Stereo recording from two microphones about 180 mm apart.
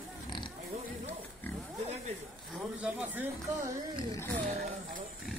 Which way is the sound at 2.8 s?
10° right (ahead or behind).